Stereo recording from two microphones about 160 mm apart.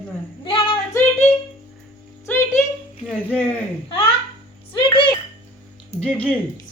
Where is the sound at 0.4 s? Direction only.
35° left (ahead or behind).